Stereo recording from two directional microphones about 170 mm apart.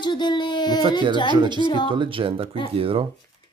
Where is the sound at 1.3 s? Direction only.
25° right (ahead or behind).